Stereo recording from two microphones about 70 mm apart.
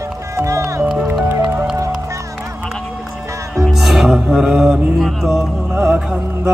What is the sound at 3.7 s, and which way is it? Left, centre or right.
Music, centre.